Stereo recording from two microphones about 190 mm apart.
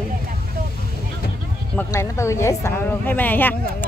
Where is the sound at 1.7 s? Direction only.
15° left (ahead or behind).